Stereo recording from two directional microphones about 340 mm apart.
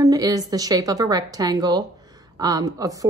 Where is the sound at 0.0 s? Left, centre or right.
Centre.